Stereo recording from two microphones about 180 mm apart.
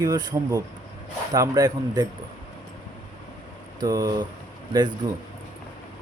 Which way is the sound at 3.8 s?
20° right (ahead or behind).